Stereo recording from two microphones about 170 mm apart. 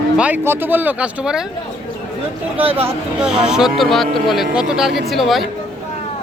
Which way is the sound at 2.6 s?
35° right (ahead or behind).